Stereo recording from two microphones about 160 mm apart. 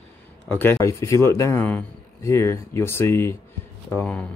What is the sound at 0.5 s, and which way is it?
Speech, 15° left (ahead or behind).